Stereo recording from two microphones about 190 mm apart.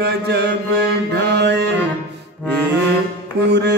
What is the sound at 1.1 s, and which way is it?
Music, 60° right (ahead or behind).